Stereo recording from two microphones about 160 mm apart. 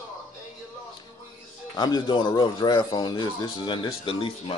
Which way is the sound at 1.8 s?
25° left (ahead or behind).